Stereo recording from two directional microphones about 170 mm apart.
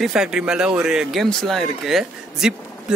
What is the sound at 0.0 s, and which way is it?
Speech, 5° right (ahead or behind).